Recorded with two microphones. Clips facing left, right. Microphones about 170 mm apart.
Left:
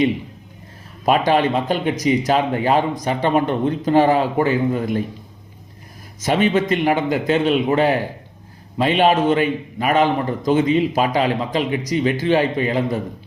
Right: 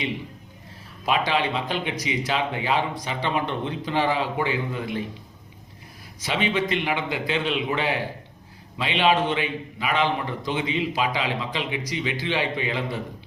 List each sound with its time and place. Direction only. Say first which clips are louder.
1.0 s a man's voice: left 7 dB; 45° left (ahead or behind)
6.1 s a man's voice: left 8 dB; 45° left (ahead or behind)